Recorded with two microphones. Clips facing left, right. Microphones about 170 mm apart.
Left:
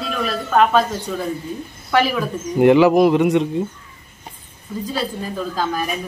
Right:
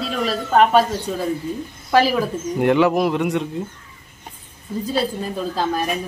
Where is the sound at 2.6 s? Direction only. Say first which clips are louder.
Left 5 dB; 5° left (ahead or behind).